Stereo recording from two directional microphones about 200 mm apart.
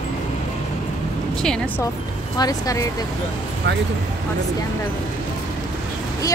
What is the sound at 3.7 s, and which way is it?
Speech, 60° right (ahead or behind).